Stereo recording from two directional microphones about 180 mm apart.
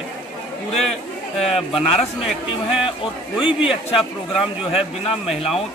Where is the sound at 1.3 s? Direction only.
Centre (ahead or behind).